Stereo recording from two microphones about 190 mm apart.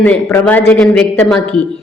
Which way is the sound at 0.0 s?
5° left (ahead or behind).